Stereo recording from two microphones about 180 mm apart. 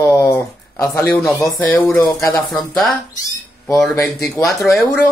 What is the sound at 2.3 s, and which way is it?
Speech, centre (ahead or behind).